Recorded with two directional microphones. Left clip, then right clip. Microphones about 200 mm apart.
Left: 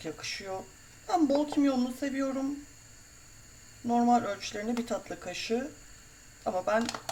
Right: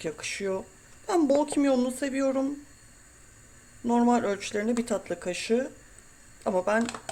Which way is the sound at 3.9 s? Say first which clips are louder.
Right 2 dB; 35° right (ahead or behind).